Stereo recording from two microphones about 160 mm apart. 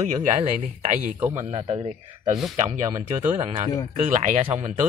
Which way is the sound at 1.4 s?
35° right (ahead or behind).